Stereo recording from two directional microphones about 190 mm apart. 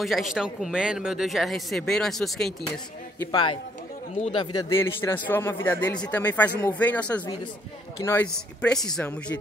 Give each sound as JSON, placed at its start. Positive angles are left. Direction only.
{"t": 0.0, "sound": "speech", "side_deg": 0}
{"t": 3.3, "sound": "a man's voice", "side_deg": 25}